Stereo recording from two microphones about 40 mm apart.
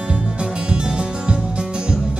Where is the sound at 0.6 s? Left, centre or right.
Right.